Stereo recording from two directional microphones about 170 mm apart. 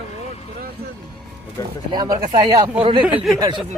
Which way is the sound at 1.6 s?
20° left (ahead or behind).